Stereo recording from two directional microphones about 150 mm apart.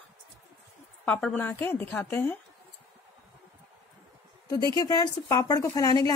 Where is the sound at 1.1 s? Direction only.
5° left (ahead or behind).